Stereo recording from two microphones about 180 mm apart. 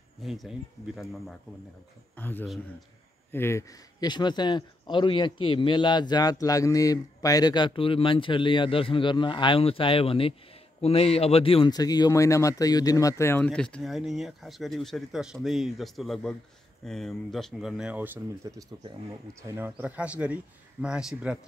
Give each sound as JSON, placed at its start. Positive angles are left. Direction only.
{"t": 0.2, "sound": "speech", "side_deg": 0}